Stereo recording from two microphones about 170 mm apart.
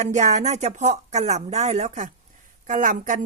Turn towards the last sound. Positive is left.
turn(degrees=-50)  # may be behind; listen again after turning